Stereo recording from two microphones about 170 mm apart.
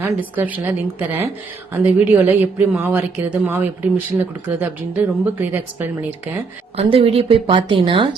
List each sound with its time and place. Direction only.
0.0 s a woman's voice: 10° right (ahead or behind)
6.7 s a woman's voice: 35° right (ahead or behind)